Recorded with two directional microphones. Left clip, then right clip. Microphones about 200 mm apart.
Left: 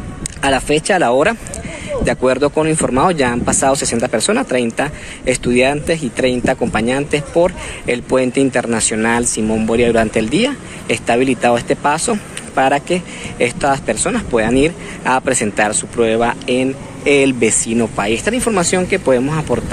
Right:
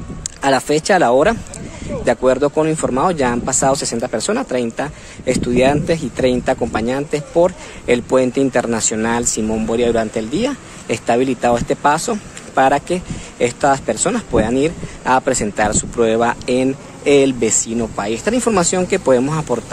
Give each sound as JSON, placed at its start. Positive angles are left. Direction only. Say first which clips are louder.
{"t": 0.4, "sound": "speech", "louder": "even", "side_deg": -20}
{"t": 16.0, "sound": "speech", "louder": "left 1 dB", "side_deg": -25}
{"t": 17.4, "sound": "speech", "louder": "left 3 dB", "side_deg": -15}